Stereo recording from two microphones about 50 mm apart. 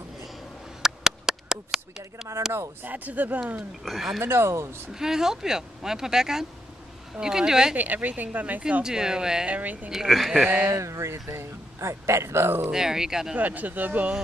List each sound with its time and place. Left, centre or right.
0.8 s a sound: centre
2.8 s a woman's voice: right
3.8 s speech: centre
4.2 s speech: right
4.9 s speech: centre
7.7 s a woman's voice: right
8.8 s speech: centre
9.5 s a woman's voice: right
9.8 s speech: centre
10.8 s speech: right
12.6 s speech: centre
13.4 s a woman's voice: right